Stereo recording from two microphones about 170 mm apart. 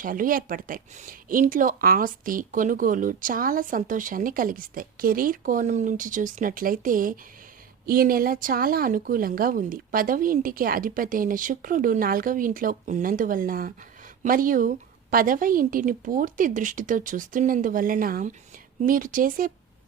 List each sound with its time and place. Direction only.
0.0 s speech: 55° right (ahead or behind)